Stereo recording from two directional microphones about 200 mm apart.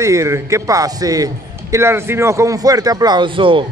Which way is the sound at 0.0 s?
15° right (ahead or behind).